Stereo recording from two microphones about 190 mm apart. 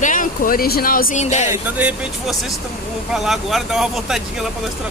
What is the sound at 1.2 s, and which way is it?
Speech, 35° left (ahead or behind).